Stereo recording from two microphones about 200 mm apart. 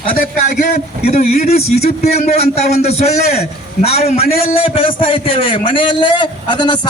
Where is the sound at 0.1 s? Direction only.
40° left (ahead or behind).